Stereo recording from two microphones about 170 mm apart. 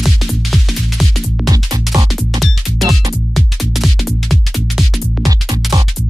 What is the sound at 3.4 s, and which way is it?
Music, centre (ahead or behind).